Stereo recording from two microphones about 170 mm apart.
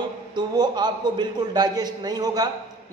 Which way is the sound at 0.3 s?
25° right (ahead or behind).